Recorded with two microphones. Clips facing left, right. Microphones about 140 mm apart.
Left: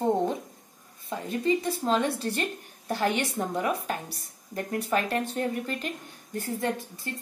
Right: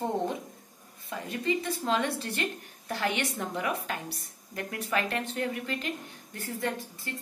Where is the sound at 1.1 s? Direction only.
35° left (ahead or behind).